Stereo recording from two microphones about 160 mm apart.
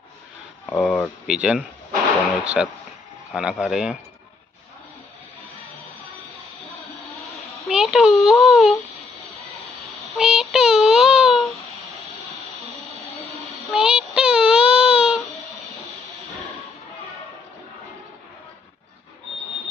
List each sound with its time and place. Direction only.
0.7 s speech: 5° left (ahead or behind)
1.2 s speech: 5° right (ahead or behind)
7.6 s a child's voice: centre (ahead or behind)
10.1 s child singing: centre (ahead or behind)
13.3 s a sound: centre (ahead or behind)